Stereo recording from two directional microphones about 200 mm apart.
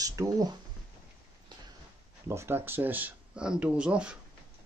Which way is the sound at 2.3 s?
10° right (ahead or behind).